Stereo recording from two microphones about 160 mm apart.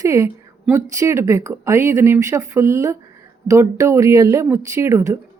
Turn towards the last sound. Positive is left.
turn(degrees=-15)  # may be behind; listen again after turning